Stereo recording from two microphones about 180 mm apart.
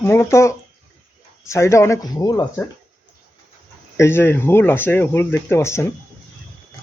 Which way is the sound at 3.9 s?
15° left (ahead or behind).